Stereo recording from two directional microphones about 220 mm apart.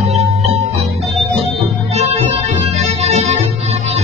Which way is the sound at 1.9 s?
30° right (ahead or behind).